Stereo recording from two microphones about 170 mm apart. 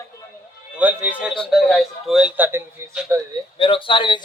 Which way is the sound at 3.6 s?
30° left (ahead or behind).